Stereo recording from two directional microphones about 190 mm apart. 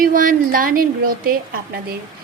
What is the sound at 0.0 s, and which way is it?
Speech, 45° right (ahead or behind).